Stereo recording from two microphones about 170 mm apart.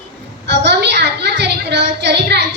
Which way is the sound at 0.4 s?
90° right.